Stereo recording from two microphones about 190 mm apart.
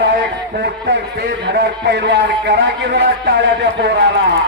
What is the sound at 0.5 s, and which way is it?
A man's voice, 65° right (ahead or behind).